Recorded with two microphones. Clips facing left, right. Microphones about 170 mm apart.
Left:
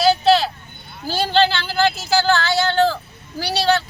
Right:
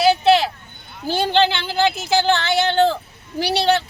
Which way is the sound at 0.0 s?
20° right (ahead or behind).